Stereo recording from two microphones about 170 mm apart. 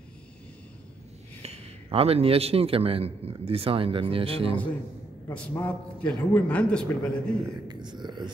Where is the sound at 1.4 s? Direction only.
35° right (ahead or behind).